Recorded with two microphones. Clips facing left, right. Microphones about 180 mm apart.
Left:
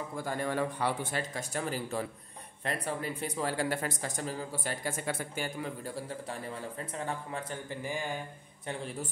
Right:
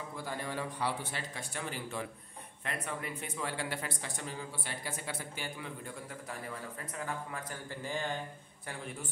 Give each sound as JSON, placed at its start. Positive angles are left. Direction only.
{"t": 0.2, "sound": "a man's voice", "side_deg": 50}
{"t": 7.7, "sound": "speech", "side_deg": 15}